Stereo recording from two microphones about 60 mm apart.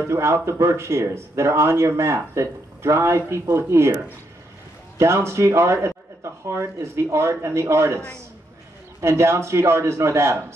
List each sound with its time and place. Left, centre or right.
0.1 s speech: right
9.0 s speech: right